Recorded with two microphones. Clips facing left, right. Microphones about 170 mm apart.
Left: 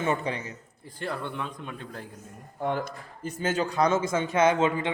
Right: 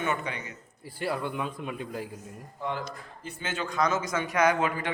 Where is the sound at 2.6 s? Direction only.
50° left (ahead or behind).